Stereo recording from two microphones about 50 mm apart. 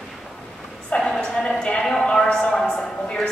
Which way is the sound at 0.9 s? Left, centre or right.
Left.